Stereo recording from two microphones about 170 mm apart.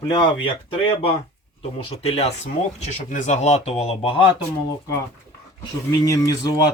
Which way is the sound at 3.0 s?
45° left (ahead or behind).